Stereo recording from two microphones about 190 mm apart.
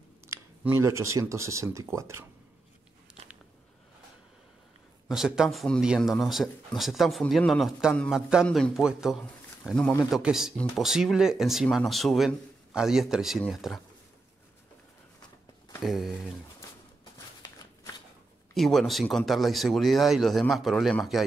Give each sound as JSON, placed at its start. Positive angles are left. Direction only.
{"t": 0.3, "sound": "speech", "side_deg": -15}
{"t": 5.0, "sound": "speech", "side_deg": 0}
{"t": 15.8, "sound": "speech", "side_deg": 0}
{"t": 17.4, "sound": "a sound", "side_deg": 20}
{"t": 18.5, "sound": "speech", "side_deg": 0}